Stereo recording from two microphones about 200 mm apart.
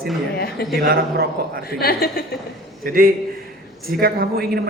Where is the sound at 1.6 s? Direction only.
50° left (ahead or behind).